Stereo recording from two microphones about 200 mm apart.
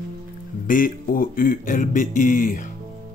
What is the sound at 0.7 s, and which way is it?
Speech, 45° left (ahead or behind).